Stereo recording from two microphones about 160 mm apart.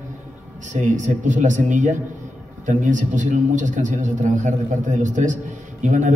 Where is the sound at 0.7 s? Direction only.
50° right (ahead or behind).